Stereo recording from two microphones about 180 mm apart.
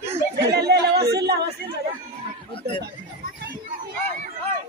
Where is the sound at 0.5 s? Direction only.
65° right (ahead or behind).